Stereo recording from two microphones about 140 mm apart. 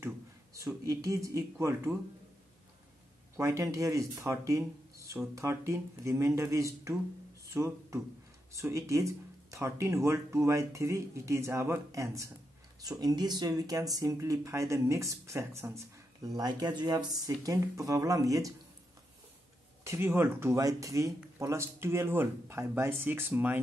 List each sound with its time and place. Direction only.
0.6 s speech: 20° right (ahead or behind)
3.3 s speech: 20° right (ahead or behind)
19.8 s speech: 20° right (ahead or behind)